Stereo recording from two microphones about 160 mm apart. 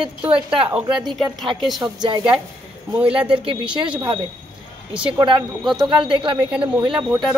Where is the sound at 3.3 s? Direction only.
30° right (ahead or behind).